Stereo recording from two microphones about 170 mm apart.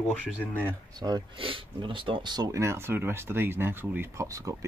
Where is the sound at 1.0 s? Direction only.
25° right (ahead or behind).